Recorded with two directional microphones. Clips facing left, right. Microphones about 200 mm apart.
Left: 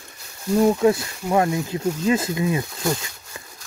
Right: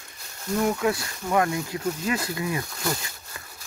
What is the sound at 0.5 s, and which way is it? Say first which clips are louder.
Speech: left 7 dB; 30° left (ahead or behind).